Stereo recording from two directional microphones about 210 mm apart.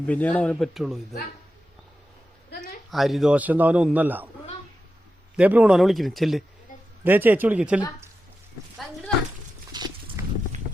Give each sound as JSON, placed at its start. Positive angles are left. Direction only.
{"t": 0.0, "sound": "speech", "side_deg": 5}
{"t": 2.9, "sound": "a man's voice", "side_deg": 0}
{"t": 5.4, "sound": "a man's voice", "side_deg": -5}
{"t": 9.7, "sound": "pig", "side_deg": -20}
{"t": 10.2, "sound": "a sound", "side_deg": -15}